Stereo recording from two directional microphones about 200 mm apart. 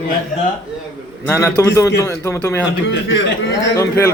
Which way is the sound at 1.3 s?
10° left (ahead or behind).